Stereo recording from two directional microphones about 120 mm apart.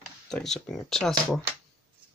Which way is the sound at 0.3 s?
5° left (ahead or behind).